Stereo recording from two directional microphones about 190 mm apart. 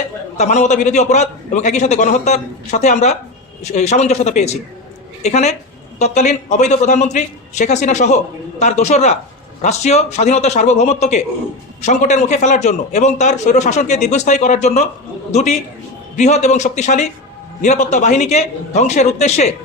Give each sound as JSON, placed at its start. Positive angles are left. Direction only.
{"t": 0.3, "sound": "a man's voice", "side_deg": 35}